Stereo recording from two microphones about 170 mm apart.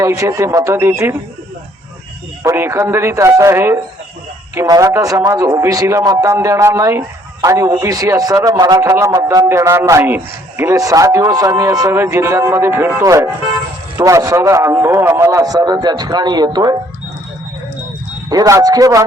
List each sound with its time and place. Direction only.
0.0 s speech: 20° right (ahead or behind)
2.4 s a man's voice: 15° right (ahead or behind)
18.3 s a man's voice: 20° right (ahead or behind)